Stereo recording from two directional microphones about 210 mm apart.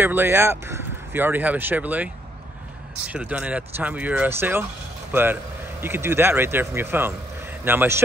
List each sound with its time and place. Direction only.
0.0 s speech: 10° right (ahead or behind)
3.1 s speech: 5° right (ahead or behind)